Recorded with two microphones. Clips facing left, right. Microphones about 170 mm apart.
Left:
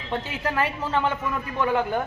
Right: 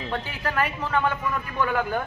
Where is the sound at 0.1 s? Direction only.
25° left (ahead or behind).